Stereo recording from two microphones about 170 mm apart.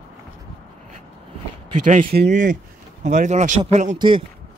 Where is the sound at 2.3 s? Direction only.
50° right (ahead or behind).